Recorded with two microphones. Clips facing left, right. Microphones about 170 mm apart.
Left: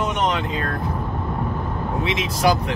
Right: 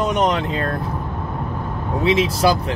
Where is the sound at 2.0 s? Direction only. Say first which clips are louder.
Right 5 dB; 35° right (ahead or behind).